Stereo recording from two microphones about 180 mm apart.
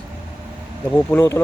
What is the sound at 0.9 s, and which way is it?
Speech, 15° left (ahead or behind).